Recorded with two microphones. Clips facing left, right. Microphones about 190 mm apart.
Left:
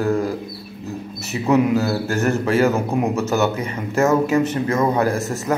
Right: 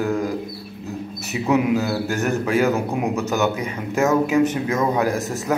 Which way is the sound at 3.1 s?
15° right (ahead or behind).